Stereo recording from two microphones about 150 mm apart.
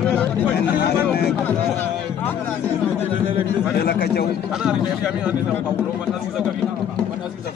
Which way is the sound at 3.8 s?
90° left.